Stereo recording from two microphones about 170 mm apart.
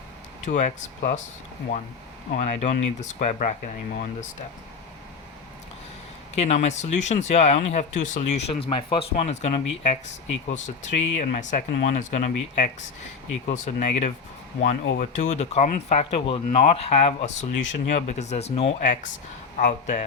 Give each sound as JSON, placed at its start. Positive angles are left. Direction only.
{"t": 0.4, "sound": "speech", "side_deg": 45}
{"t": 2.3, "sound": "speech", "side_deg": 40}
{"t": 6.3, "sound": "speech", "side_deg": 40}